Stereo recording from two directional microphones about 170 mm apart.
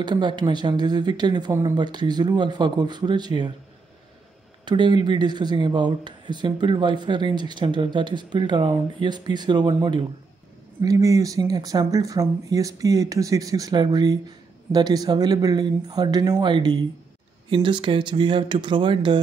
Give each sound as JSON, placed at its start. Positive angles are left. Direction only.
{"t": 0.0, "sound": "speech", "side_deg": -25}
{"t": 4.6, "sound": "speech", "side_deg": -25}